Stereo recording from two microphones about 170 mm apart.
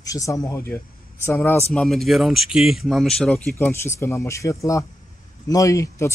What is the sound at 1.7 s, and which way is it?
Speech, centre (ahead or behind).